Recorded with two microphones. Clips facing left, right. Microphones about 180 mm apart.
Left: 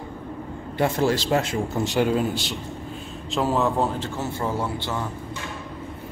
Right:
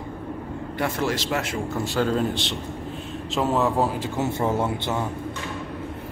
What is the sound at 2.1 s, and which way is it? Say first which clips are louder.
Speech: even; centre (ahead or behind).